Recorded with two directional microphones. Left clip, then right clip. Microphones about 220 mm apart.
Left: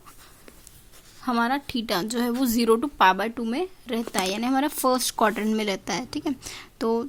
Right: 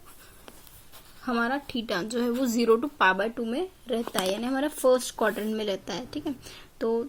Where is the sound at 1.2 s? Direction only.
45° left (ahead or behind).